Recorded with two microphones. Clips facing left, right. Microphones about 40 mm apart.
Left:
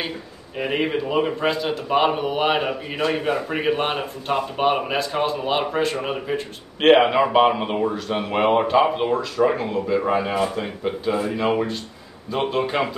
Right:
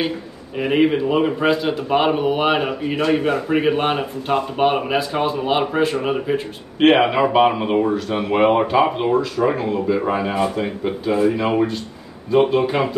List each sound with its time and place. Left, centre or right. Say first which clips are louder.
0.6 s a man's voice: right 6 dB; centre